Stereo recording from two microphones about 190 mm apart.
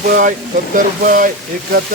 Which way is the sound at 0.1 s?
45° right (ahead or behind).